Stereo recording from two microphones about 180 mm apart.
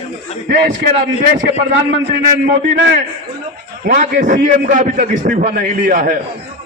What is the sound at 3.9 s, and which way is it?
A man's voice, 45° right (ahead or behind).